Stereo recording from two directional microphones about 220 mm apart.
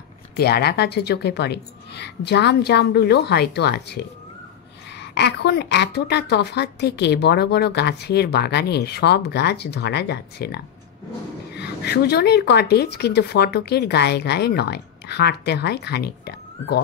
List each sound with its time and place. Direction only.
0.4 s a woman's voice: 45° left (ahead or behind)
5.0 s a woman's voice: 50° left (ahead or behind)